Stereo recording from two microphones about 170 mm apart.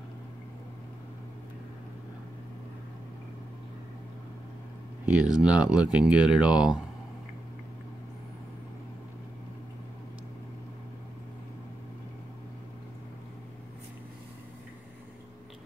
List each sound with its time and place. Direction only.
5.0 s speech: 5° right (ahead or behind)